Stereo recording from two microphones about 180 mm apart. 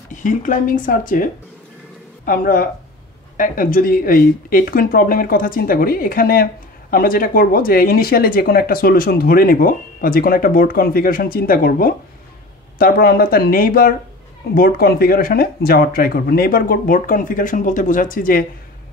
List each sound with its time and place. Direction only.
0.1 s speech: 45° left (ahead or behind)